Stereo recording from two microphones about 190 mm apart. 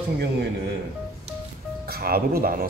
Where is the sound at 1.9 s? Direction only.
55° right (ahead or behind).